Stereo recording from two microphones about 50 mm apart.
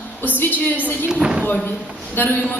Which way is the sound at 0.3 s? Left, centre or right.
Left.